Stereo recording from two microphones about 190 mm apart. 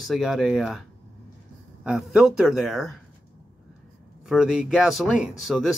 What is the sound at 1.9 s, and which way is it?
Speech, centre (ahead or behind).